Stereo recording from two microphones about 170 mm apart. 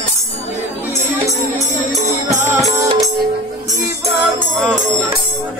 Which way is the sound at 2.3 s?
15° right (ahead or behind).